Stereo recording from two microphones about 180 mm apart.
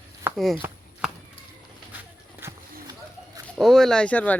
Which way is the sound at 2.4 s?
15° right (ahead or behind).